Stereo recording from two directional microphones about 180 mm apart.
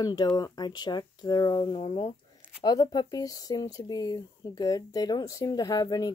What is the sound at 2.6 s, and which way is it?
Speech, 20° left (ahead or behind).